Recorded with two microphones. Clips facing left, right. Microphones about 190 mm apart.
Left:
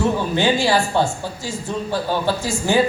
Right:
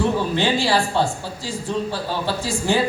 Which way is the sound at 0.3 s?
30° right (ahead or behind).